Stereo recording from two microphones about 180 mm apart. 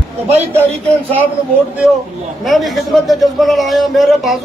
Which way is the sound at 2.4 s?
Centre (ahead or behind).